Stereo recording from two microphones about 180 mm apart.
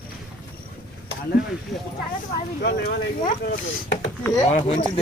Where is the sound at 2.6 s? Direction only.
55° left (ahead or behind).